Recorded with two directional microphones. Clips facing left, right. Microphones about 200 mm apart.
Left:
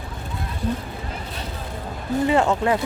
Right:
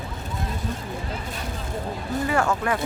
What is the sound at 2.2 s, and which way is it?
Speech, 20° left (ahead or behind).